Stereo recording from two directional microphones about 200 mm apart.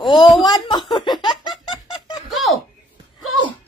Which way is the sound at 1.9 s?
20° left (ahead or behind).